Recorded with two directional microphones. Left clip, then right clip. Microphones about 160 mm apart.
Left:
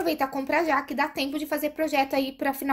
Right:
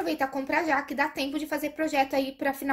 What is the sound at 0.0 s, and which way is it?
A woman's voice, 30° left (ahead or behind).